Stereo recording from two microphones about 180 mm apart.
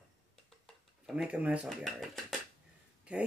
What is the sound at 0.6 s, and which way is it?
Speech, 5° right (ahead or behind).